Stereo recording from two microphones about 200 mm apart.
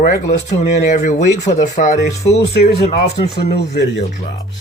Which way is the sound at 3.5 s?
55° left (ahead or behind).